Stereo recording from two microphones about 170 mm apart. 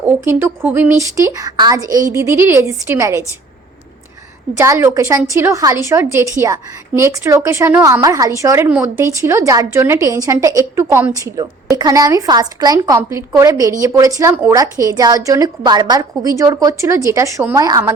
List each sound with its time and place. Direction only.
0.0 s a woman's voice: 15° right (ahead or behind)
4.5 s a woman's voice: 15° right (ahead or behind)